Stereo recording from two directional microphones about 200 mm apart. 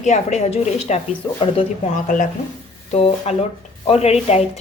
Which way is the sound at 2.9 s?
30° left (ahead or behind).